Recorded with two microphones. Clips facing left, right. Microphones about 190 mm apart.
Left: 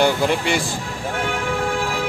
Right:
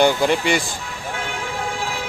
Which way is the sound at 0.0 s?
Centre (ahead or behind).